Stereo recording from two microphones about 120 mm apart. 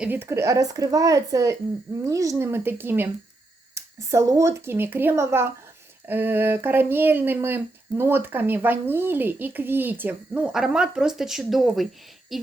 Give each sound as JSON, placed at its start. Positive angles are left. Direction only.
{"t": 0.0, "sound": "speech", "side_deg": -15}